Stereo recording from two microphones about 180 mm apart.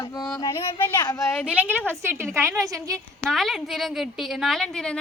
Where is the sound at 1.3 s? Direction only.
10° left (ahead or behind).